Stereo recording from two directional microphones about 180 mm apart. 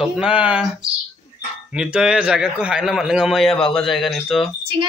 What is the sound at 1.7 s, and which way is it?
A man's voice, 5° right (ahead or behind).